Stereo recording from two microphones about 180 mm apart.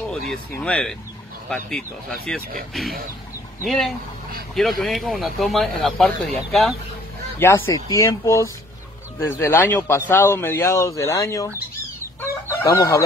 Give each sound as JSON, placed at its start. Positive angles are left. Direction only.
{"t": 0.3, "sound": "speech", "side_deg": 5}
{"t": 3.6, "sound": "speech", "side_deg": 0}
{"t": 7.3, "sound": "a man's voice", "side_deg": 15}
{"t": 12.2, "sound": "chicken", "side_deg": 15}